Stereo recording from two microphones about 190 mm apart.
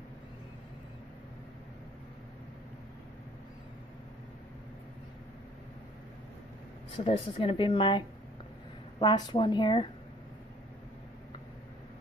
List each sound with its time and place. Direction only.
7.1 s speech: 25° left (ahead or behind)
9.0 s speech: 20° left (ahead or behind)